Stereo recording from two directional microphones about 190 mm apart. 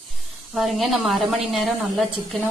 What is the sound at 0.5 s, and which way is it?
Speech, centre (ahead or behind).